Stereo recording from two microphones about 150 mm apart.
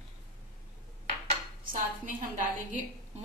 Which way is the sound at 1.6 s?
60° right (ahead or behind).